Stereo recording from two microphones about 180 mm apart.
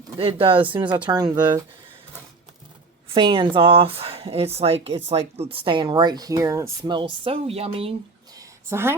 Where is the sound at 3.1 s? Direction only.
25° right (ahead or behind).